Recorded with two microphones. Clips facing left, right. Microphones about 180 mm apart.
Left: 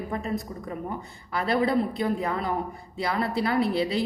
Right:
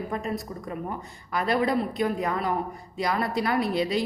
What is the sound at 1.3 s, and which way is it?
A woman's voice, 25° left (ahead or behind).